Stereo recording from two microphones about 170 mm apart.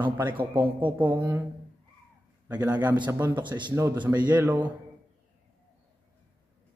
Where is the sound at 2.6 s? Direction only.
10° right (ahead or behind).